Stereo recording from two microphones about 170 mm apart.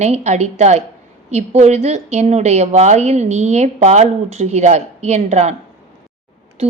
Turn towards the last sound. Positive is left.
turn(degrees=-40)  # may be behind; listen again after turning